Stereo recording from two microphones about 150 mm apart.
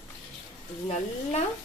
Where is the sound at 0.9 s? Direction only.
50° left (ahead or behind).